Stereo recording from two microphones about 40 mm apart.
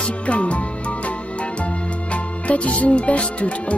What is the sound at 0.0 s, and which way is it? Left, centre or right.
Music, left.